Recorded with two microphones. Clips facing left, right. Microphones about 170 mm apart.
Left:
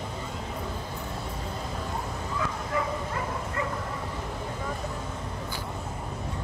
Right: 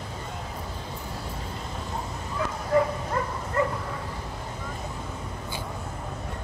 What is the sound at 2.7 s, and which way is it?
Bow-wow, 40° right (ahead or behind).